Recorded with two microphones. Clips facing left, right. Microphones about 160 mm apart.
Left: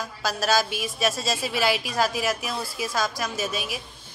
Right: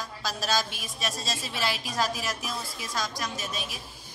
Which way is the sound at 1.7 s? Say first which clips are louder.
Left 5 dB; 65° left (ahead or behind).